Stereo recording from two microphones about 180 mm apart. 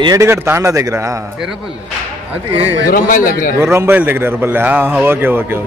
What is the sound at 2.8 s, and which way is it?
Speech, 50° left (ahead or behind).